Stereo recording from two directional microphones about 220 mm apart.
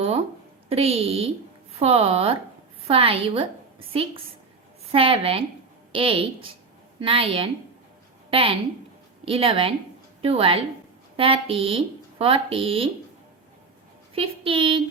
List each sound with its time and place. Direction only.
0.7 s speech: 25° right (ahead or behind)
4.9 s a woman's voice: 25° right (ahead or behind)
14.2 s speech: 25° right (ahead or behind)